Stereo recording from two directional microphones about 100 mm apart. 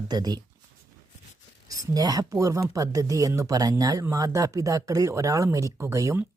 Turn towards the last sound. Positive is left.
turn(degrees=-30)  # may be behind; listen again after turning